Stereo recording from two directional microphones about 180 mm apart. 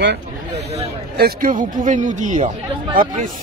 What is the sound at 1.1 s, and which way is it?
Speech, 55° right (ahead or behind).